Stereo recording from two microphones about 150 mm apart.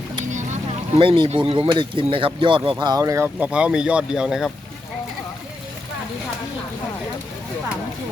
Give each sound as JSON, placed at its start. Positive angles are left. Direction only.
{"t": 0.9, "sound": "speech", "side_deg": -35}
{"t": 3.4, "sound": "speech", "side_deg": -5}